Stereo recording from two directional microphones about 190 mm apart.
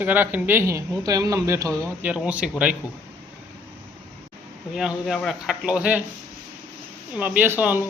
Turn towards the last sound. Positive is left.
turn(degrees=-10)  # may be behind; listen again after turning